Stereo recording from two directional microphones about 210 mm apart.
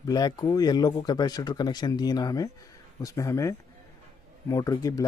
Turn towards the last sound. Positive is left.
turn(degrees=15)  # may be behind; listen again after turning